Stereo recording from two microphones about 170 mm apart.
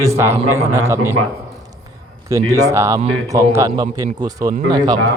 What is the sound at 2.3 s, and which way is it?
A man's voice, 20° right (ahead or behind).